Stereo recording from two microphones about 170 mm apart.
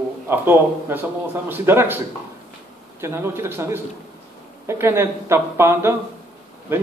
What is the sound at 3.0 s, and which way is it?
Speech, 15° right (ahead or behind).